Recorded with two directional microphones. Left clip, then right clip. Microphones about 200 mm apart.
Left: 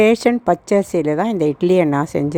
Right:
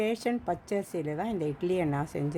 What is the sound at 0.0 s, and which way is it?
A woman's voice, 40° left (ahead or behind).